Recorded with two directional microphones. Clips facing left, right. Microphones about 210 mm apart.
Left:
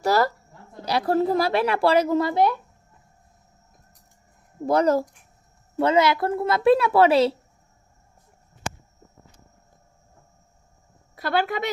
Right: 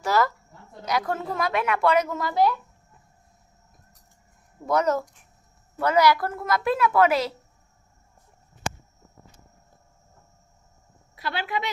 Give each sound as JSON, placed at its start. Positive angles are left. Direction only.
{"t": 0.0, "sound": "speech", "side_deg": 35}
{"t": 4.6, "sound": "a woman's voice", "side_deg": 30}
{"t": 11.1, "sound": "a woman's voice", "side_deg": 45}